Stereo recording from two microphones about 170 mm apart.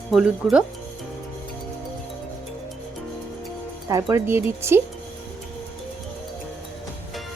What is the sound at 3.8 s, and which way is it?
Speech, 15° right (ahead or behind).